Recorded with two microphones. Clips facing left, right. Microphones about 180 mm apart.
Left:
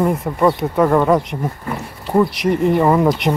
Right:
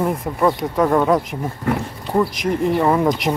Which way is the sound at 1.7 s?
80° right.